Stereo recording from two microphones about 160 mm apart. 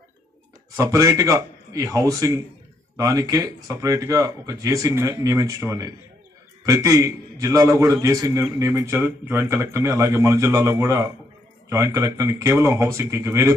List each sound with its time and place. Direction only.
0.7 s a man's voice: 20° right (ahead or behind)